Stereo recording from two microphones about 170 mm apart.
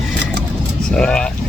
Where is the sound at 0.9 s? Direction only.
5° left (ahead or behind).